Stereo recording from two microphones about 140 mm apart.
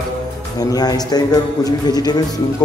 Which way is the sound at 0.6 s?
25° left (ahead or behind).